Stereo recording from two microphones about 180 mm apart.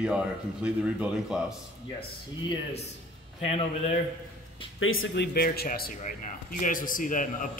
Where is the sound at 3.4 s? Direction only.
35° left (ahead or behind).